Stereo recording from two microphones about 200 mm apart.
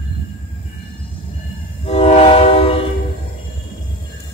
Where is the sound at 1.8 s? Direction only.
30° left (ahead or behind).